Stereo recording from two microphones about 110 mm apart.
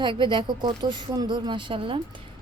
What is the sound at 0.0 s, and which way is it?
A woman's voice, 45° right (ahead or behind).